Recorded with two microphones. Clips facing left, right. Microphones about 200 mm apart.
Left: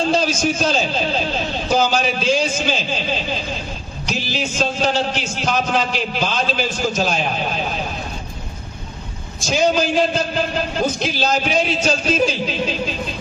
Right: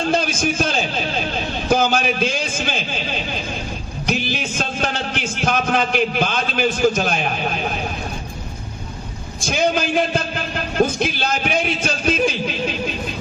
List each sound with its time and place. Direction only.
0.0 s a man's voice: 55° right (ahead or behind)
9.4 s a man's voice: 55° right (ahead or behind)